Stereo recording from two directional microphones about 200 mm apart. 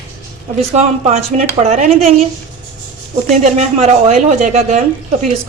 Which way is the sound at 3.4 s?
35° right (ahead or behind).